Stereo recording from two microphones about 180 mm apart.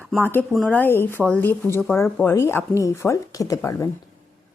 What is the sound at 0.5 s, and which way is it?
Speech, centre (ahead or behind).